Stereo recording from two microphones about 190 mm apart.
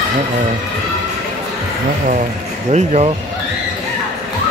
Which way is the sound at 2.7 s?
35° right (ahead or behind).